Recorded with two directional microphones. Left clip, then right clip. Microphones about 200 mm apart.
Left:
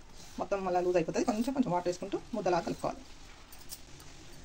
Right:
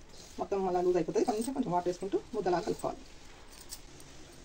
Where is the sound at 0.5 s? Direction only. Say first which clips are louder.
Even; 45° left (ahead or behind).